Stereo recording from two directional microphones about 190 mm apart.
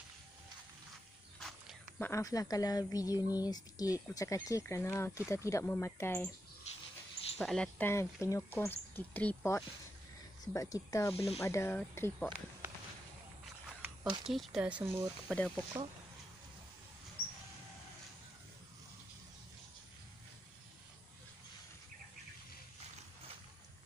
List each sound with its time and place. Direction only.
2.0 s a woman's voice: 15° left (ahead or behind)
7.3 s a woman's voice: 5° left (ahead or behind)
13.7 s a sound: 10° right (ahead or behind)
14.2 s speech: centre (ahead or behind)
15.3 s speech: 5° left (ahead or behind)